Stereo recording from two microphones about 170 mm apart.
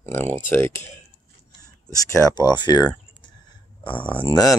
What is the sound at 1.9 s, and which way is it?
Speech, 20° left (ahead or behind).